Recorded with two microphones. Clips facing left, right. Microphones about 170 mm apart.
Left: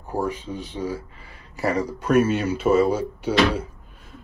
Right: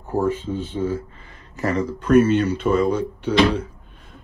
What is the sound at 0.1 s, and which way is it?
Speech, 15° left (ahead or behind).